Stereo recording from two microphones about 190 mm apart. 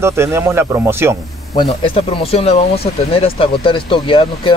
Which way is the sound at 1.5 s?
25° left (ahead or behind).